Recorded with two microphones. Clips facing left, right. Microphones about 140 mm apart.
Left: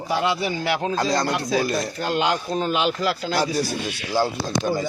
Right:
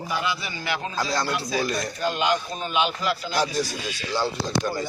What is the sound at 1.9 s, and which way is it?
Speech, 90° left.